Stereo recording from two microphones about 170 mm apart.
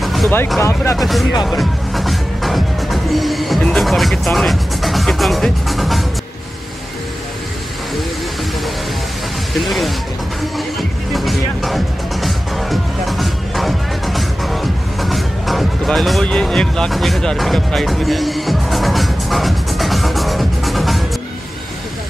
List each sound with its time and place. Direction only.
0.0 s music: centre (ahead or behind)
0.6 s speech: 15° left (ahead or behind)
0.9 s speech: centre (ahead or behind)
1.4 s music: centre (ahead or behind)
9.6 s speech: centre (ahead or behind)
10.4 s music: centre (ahead or behind)